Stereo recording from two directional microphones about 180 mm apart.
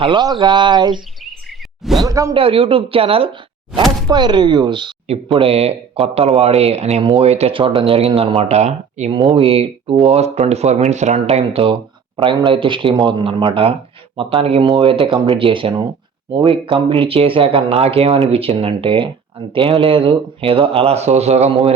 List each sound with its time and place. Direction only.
0.0 s speech: 25° right (ahead or behind)
1.2 s a sound: centre (ahead or behind)
2.0 s speech: 20° right (ahead or behind)
2.3 s speech: 30° right (ahead or behind)